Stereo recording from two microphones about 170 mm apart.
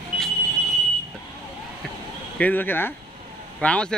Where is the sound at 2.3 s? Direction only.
10° left (ahead or behind).